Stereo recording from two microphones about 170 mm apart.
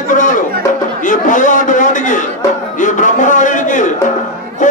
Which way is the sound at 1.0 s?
50° left (ahead or behind).